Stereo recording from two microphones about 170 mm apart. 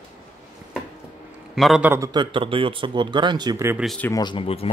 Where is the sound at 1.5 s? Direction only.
Centre (ahead or behind).